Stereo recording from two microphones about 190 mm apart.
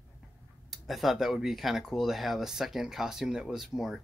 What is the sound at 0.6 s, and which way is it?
Speech, centre (ahead or behind).